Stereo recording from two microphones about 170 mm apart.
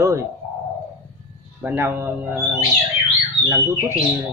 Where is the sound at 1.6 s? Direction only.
10° right (ahead or behind).